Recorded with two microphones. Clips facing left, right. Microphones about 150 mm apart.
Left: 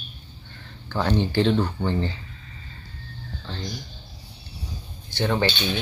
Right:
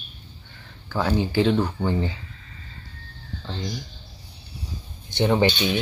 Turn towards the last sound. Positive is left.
turn(degrees=-15)  # may be behind; listen again after turning